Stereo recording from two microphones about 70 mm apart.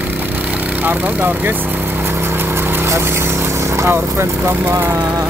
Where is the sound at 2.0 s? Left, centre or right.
Right.